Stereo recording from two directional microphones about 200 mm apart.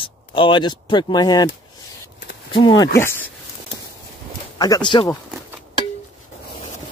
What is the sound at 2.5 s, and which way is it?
Speech, 20° left (ahead or behind).